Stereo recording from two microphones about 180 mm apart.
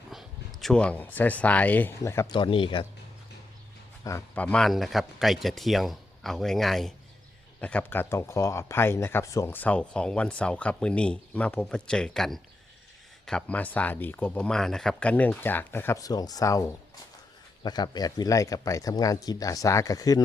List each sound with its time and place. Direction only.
0.1 s speech: centre (ahead or behind)
2.3 s speech: 25° left (ahead or behind)
4.0 s speech: 10° left (ahead or behind)